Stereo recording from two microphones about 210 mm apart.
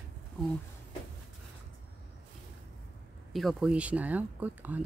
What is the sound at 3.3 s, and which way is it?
Speech, centre (ahead or behind).